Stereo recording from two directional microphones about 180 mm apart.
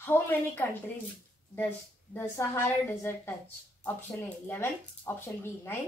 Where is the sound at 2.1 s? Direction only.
15° left (ahead or behind).